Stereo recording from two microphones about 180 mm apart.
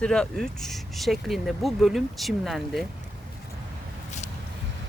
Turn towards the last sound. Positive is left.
turn(degrees=40)  # may be behind; listen again after turning